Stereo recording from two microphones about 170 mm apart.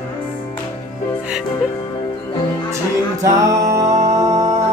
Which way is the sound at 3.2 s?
20° right (ahead or behind).